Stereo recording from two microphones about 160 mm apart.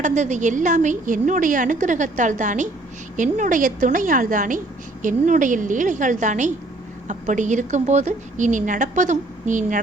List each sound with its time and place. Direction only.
0.0 s a woman's voice: 50° right (ahead or behind)